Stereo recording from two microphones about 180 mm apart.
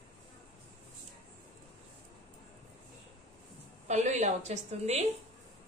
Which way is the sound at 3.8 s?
40° right (ahead or behind).